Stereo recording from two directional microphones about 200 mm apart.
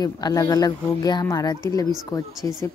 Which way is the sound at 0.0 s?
15° left (ahead or behind).